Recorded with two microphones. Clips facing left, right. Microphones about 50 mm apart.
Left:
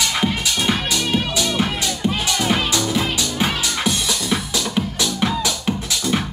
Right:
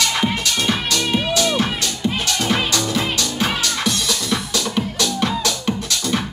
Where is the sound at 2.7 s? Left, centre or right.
Centre.